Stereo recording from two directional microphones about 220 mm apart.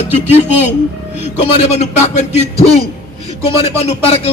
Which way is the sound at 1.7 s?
30° left (ahead or behind).